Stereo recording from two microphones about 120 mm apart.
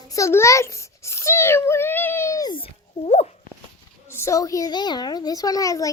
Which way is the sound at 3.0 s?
70° left (ahead or behind).